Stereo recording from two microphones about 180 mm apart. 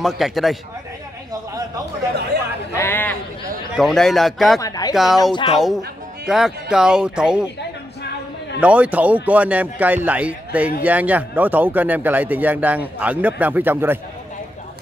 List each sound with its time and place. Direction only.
0.0 s speech: centre (ahead or behind)
2.7 s a sound: 15° left (ahead or behind)
3.7 s speech: centre (ahead or behind)
4.6 s speech: 20° left (ahead or behind)
4.9 s speech: centre (ahead or behind)
5.3 s speech: 30° left (ahead or behind)
6.2 s speech: 5° right (ahead or behind)
8.5 s speech: 5° right (ahead or behind)